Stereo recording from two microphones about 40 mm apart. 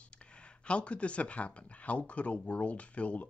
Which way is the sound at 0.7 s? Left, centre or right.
Left.